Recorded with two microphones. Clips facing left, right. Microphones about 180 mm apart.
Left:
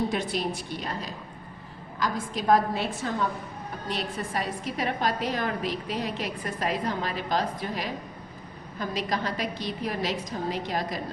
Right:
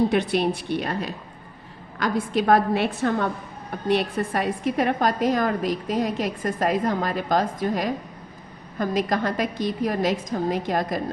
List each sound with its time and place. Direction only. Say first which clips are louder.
0.1 s a woman's voice: right 7 dB; 65° right (ahead or behind)